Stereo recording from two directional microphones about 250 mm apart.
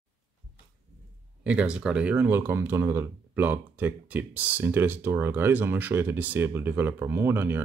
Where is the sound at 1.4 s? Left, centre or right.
Centre.